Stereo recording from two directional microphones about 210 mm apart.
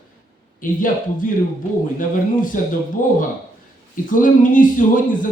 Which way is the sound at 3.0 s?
40° left (ahead or behind).